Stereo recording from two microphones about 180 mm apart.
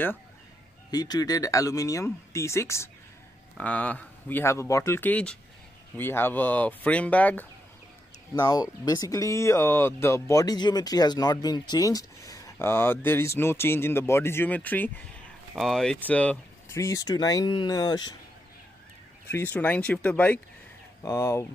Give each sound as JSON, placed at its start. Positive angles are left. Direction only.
{"t": 0.9, "sound": "speech", "side_deg": 20}
{"t": 8.4, "sound": "speech", "side_deg": 20}
{"t": 19.3, "sound": "speech", "side_deg": 10}